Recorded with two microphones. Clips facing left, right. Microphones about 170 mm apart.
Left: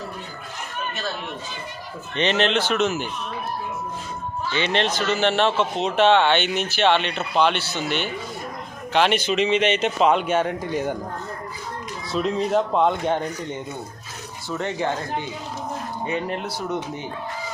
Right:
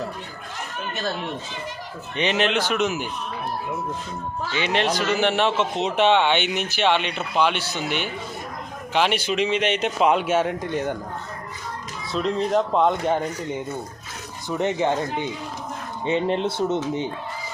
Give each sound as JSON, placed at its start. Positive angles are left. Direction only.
{"t": 2.1, "sound": "speech", "side_deg": -10}
{"t": 4.5, "sound": "speech", "side_deg": -10}
{"t": 12.1, "sound": "speech", "side_deg": 0}
{"t": 14.5, "sound": "speech", "side_deg": -20}